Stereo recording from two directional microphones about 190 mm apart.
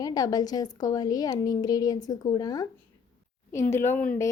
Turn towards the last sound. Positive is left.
turn(degrees=10)  # may be behind; listen again after turning